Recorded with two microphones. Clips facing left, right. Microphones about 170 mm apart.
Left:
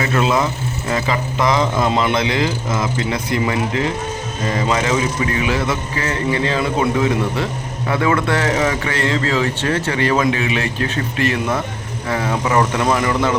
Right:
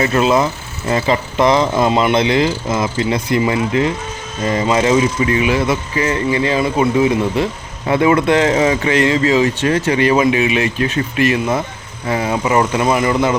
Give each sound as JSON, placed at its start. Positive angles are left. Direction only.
{"t": 0.0, "sound": "a man's voice", "side_deg": -25}